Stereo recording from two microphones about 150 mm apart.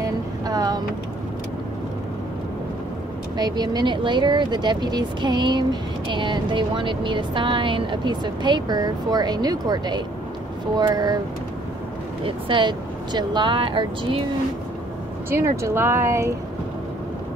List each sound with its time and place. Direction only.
0.5 s vehicle: 25° right (ahead or behind)
3.3 s speech: 25° right (ahead or behind)
12.3 s speech: 35° right (ahead or behind)
15.2 s speech: 20° right (ahead or behind)